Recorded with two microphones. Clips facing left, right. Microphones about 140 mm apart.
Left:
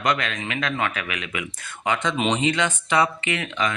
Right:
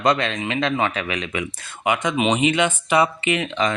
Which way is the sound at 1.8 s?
15° right (ahead or behind).